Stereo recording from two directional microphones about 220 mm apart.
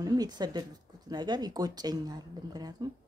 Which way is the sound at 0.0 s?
15° right (ahead or behind).